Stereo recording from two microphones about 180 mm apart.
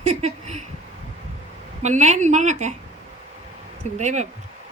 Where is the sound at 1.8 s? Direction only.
40° right (ahead or behind).